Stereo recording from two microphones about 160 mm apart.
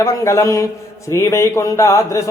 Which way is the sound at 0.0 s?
20° left (ahead or behind).